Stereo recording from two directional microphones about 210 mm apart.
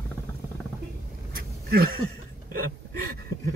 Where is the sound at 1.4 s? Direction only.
45° right (ahead or behind).